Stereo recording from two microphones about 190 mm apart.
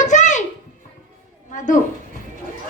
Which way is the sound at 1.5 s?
40° left (ahead or behind).